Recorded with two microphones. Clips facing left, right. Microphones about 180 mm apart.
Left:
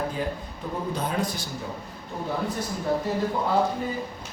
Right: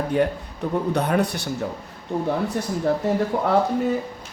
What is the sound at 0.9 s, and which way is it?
Speech, 65° right (ahead or behind).